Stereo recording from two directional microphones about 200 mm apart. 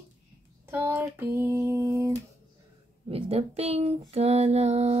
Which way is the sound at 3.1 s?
30° right (ahead or behind).